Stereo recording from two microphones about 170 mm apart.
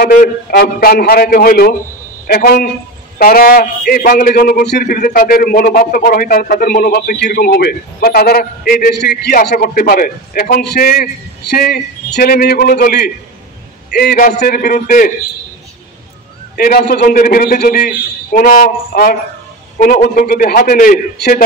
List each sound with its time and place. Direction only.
0.0 s a man's voice: 65° left (ahead or behind)
16.5 s a man's voice: 60° left (ahead or behind)